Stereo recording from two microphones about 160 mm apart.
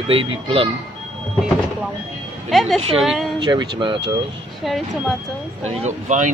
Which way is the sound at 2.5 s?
Centre (ahead or behind).